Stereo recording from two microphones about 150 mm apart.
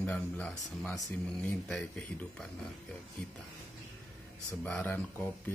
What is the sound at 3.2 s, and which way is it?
Speech, 5° left (ahead or behind).